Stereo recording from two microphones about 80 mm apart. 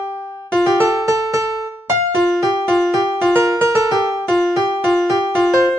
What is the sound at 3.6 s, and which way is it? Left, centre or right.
Music, right.